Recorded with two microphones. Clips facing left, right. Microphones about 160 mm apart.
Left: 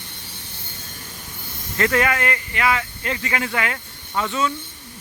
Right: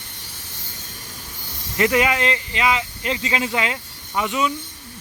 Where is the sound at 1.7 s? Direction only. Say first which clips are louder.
Right 1 dB; 20° right (ahead or behind).